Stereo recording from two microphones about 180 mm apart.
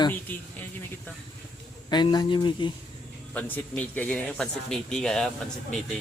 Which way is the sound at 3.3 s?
10° left (ahead or behind).